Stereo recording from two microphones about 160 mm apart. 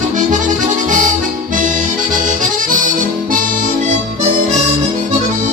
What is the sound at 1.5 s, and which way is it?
Music, 55° right (ahead or behind).